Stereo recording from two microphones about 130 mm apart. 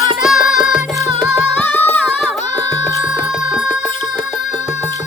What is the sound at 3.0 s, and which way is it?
Music, 5° right (ahead or behind).